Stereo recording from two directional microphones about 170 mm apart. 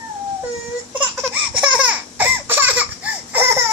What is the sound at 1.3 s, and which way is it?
Laughter, 5° right (ahead or behind).